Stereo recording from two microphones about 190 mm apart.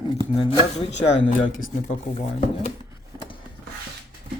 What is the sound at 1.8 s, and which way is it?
Speech, 40° left (ahead or behind).